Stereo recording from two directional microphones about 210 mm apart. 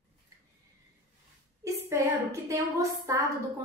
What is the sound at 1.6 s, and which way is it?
A woman's voice, 15° right (ahead or behind).